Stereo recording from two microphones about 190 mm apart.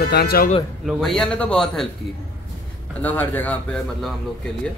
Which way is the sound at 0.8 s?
Centre (ahead or behind).